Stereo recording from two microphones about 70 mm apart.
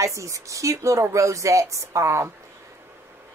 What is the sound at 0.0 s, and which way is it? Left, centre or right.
A woman's voice, right.